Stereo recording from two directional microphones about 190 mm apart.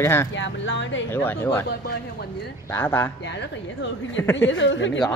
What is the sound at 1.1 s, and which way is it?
Speech, 10° left (ahead or behind).